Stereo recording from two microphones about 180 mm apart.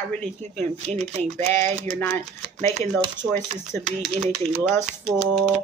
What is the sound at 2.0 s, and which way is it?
Speech, 10° left (ahead or behind).